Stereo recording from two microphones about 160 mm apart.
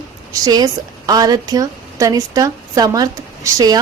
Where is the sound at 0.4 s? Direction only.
25° right (ahead or behind).